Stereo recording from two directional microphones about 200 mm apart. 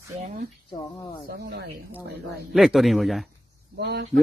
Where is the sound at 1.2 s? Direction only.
50° right (ahead or behind).